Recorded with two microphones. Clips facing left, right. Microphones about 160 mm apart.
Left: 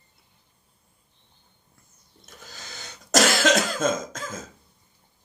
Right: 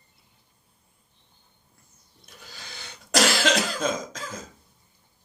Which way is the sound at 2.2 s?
45° left (ahead or behind).